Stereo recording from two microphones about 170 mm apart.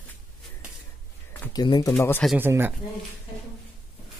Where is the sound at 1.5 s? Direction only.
25° left (ahead or behind).